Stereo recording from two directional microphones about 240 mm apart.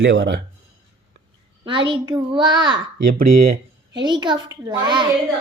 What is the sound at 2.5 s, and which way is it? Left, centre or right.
Speech, centre.